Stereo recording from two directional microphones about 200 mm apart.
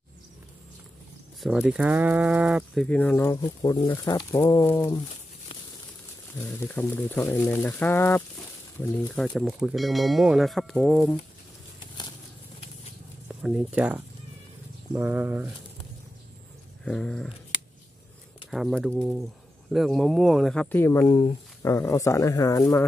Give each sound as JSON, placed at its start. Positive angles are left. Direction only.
{"t": 1.4, "sound": "speech", "side_deg": -5}
{"t": 6.3, "sound": "speech", "side_deg": 10}
{"t": 13.3, "sound": "speech", "side_deg": -5}
{"t": 16.8, "sound": "speech", "side_deg": 5}
{"t": 18.5, "sound": "speech", "side_deg": 0}
{"t": 21.1, "sound": "speech", "side_deg": 25}